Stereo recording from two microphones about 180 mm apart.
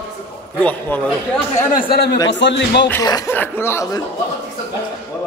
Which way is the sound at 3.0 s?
20° left (ahead or behind).